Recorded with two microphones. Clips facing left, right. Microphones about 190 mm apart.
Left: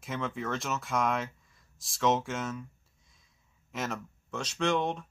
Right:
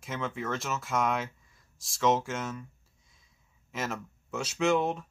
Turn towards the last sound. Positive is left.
turn(degrees=-5)  # may be behind; listen again after turning